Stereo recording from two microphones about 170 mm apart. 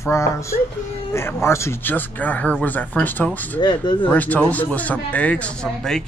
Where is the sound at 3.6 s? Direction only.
25° left (ahead or behind).